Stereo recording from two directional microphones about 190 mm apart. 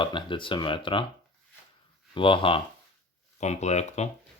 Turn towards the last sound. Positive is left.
turn(degrees=35)  # may be behind; listen again after turning